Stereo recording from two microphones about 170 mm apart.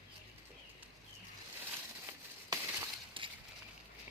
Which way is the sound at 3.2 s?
30° right (ahead or behind).